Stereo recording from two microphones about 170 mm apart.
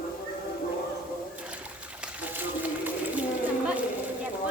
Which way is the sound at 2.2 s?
10° right (ahead or behind).